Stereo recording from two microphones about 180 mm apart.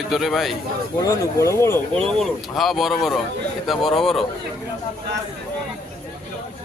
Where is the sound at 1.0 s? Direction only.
20° left (ahead or behind).